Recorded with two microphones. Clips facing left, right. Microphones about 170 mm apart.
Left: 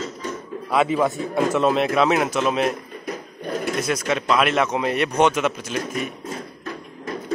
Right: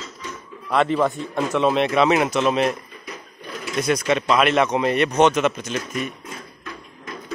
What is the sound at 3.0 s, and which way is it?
Sewing machine, 50° left (ahead or behind).